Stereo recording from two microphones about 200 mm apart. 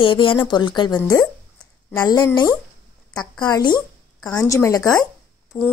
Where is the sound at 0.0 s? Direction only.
25° left (ahead or behind).